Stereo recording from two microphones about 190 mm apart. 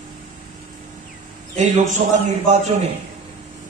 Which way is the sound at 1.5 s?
40° right (ahead or behind).